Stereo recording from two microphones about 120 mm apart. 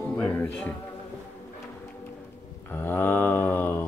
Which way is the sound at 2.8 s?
20° left (ahead or behind).